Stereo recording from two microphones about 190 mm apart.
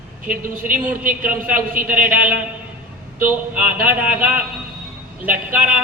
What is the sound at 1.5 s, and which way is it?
Speech, 45° right (ahead or behind).